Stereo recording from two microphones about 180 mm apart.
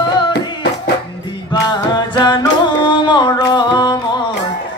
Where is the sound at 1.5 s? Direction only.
25° left (ahead or behind).